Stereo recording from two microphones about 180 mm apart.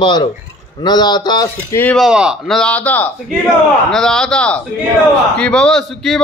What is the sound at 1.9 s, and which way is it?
A man's voice, 5° right (ahead or behind).